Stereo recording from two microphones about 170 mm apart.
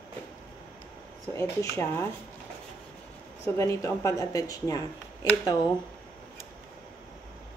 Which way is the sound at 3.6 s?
15° left (ahead or behind).